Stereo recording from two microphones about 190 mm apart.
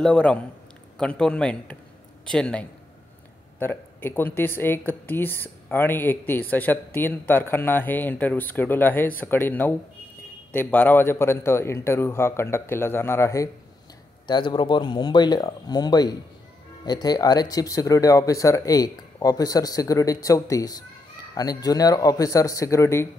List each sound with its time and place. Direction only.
0.0 s a man's voice: 5° left (ahead or behind)